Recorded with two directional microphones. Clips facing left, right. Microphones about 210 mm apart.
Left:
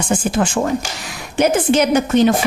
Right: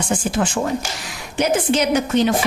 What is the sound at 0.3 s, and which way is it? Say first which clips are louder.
A woman's voice: left 3 dB; 50° left (ahead or behind).